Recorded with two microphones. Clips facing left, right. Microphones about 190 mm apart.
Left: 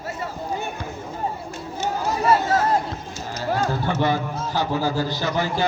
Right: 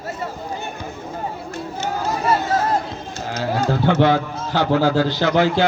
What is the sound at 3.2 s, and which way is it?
A man's voice, 80° right.